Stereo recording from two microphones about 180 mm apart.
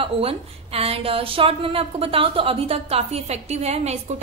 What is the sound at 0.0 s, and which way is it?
A woman's voice, 30° right (ahead or behind).